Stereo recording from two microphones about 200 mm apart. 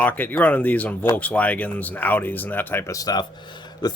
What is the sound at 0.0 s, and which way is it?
Speech, 10° left (ahead or behind).